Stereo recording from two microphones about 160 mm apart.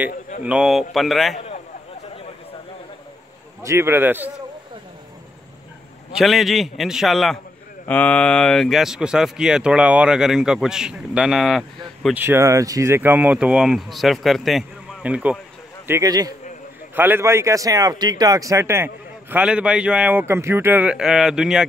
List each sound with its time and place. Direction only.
0.5 s speech: 5° right (ahead or behind)
3.6 s speech: 15° right (ahead or behind)
6.1 s speech: centre (ahead or behind)
12.2 s speech: 15° right (ahead or behind)
15.9 s speech: 25° right (ahead or behind)
16.9 s speech: 15° right (ahead or behind)
19.3 s speech: 5° right (ahead or behind)